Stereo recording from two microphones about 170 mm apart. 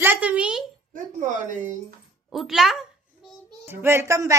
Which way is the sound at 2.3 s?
Centre (ahead or behind).